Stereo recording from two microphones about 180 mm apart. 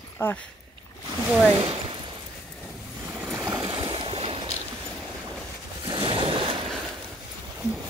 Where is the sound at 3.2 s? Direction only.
10° right (ahead or behind).